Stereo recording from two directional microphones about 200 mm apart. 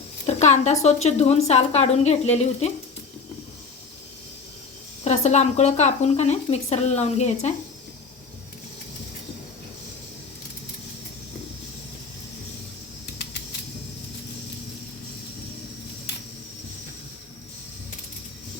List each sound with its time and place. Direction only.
0.3 s a woman's voice: 35° left (ahead or behind)
5.0 s a woman's voice: 35° left (ahead or behind)